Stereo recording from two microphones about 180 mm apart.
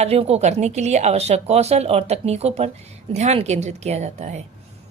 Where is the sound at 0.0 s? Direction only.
35° right (ahead or behind).